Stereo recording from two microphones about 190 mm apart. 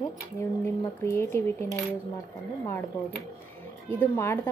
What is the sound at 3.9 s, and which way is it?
Speech, 10° left (ahead or behind).